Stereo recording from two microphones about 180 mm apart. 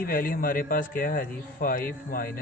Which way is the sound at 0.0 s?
55° left (ahead or behind).